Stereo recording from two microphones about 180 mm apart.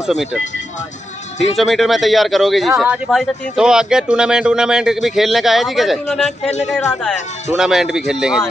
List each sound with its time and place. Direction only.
0.0 s speech: 5° right (ahead or behind)
1.6 s speech: centre (ahead or behind)
6.2 s speech: 40° left (ahead or behind)
7.5 s speech: 5° right (ahead or behind)